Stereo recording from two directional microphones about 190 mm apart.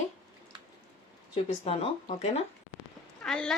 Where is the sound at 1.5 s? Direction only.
30° left (ahead or behind).